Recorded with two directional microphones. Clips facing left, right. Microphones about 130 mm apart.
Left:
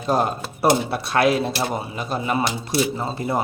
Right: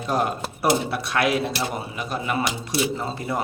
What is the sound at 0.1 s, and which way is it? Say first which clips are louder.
Speech: left 3 dB; 30° left (ahead or behind).